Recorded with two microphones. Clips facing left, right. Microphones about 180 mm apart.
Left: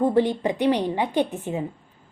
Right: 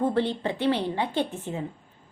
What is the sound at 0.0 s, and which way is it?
A woman's voice, 15° left (ahead or behind).